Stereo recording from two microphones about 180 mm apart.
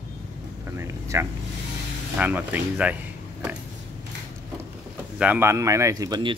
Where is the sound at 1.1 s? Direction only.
15° right (ahead or behind).